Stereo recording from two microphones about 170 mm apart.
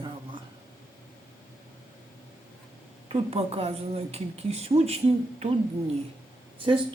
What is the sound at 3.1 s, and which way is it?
A man's voice, 35° right (ahead or behind).